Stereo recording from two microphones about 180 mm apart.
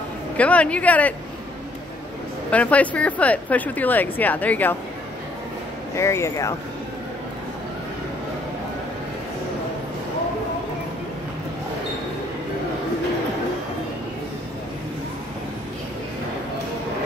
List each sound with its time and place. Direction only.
0.4 s speech: 5° left (ahead or behind)
2.5 s speech: 5° left (ahead or behind)
5.9 s speech: 15° left (ahead or behind)